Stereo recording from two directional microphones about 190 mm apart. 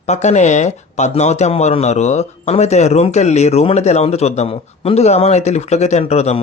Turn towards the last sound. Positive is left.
turn(degrees=35)  # may be behind; listen again after turning